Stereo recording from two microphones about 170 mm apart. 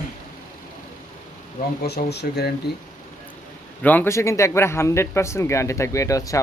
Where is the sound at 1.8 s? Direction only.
70° left (ahead or behind).